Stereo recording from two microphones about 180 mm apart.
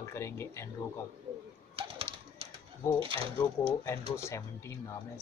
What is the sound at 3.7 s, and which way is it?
Speech, 15° left (ahead or behind).